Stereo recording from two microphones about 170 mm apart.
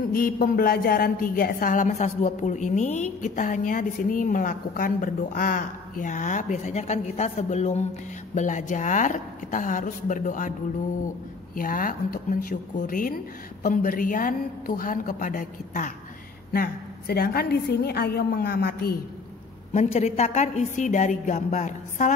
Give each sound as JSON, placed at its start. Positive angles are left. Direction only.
{"t": 0.1, "sound": "a woman's voice", "side_deg": 60}
{"t": 11.5, "sound": "a woman's voice", "side_deg": 55}
{"t": 16.5, "sound": "a woman's voice", "side_deg": 65}
{"t": 19.7, "sound": "a woman's voice", "side_deg": 40}